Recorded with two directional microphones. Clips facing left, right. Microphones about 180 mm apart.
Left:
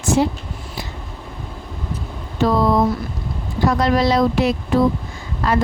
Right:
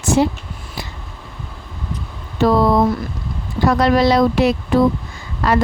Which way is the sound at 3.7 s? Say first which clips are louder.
Right 3 dB; 70° right (ahead or behind).